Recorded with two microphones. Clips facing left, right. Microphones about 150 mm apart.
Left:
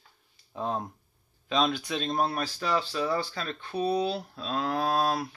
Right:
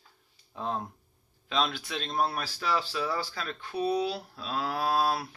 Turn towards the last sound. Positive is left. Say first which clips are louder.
# left 1 dB
turn(degrees=-5)  # may be behind; listen again after turning